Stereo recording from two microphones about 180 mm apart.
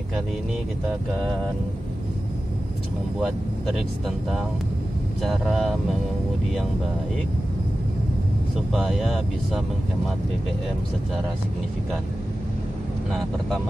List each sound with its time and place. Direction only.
5.2 s speech: centre (ahead or behind)
8.7 s speech: centre (ahead or behind)